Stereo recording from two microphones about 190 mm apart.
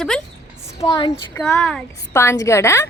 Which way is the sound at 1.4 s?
5° left (ahead or behind).